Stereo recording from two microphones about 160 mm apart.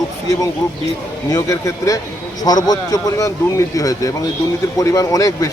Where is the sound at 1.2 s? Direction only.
20° left (ahead or behind).